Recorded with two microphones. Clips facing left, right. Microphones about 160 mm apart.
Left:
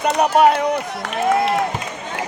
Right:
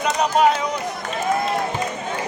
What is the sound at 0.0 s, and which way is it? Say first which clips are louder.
Speech: left 3 dB; 60° left (ahead or behind).